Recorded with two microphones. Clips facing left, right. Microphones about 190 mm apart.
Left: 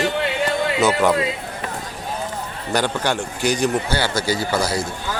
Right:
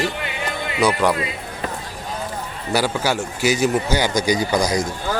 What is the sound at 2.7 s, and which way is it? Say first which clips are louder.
A man's voice: right 1 dB; 5° right (ahead or behind).